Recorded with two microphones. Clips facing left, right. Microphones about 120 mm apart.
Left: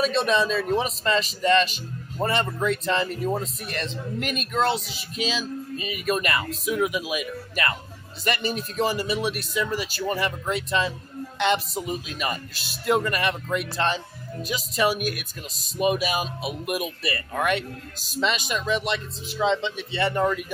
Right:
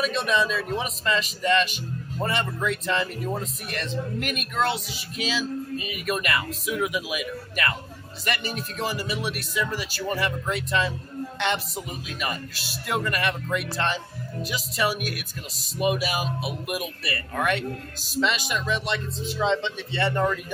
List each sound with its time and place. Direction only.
0.0 s speech: 30° left (ahead or behind)
19.2 s speech: 10° left (ahead or behind)